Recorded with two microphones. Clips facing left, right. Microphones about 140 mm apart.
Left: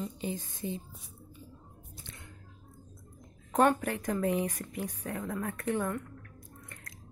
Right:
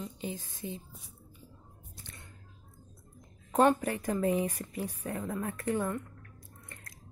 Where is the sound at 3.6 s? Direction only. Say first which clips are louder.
Right 1 dB; 10° right (ahead or behind).